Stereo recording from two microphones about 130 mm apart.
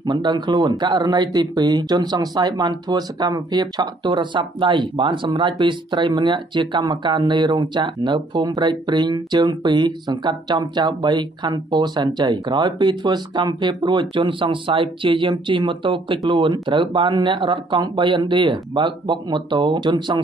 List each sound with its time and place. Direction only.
0.0 s speech: 35° right (ahead or behind)